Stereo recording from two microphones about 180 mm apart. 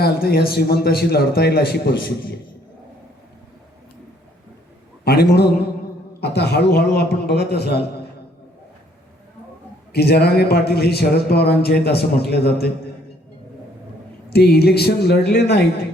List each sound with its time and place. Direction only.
0.0 s speech: 60° left (ahead or behind)
5.0 s a man's voice: 65° left (ahead or behind)
9.9 s speech: 65° left (ahead or behind)
14.3 s speech: 60° left (ahead or behind)